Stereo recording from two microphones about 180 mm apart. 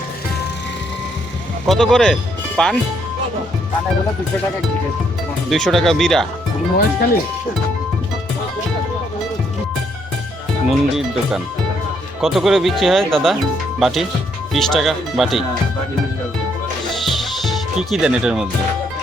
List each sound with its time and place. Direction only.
1.6 s speech: centre (ahead or behind)
5.5 s speech: centre (ahead or behind)
6.7 s speech: 55° left (ahead or behind)
10.7 s speech: centre (ahead or behind)
17.4 s speech: centre (ahead or behind)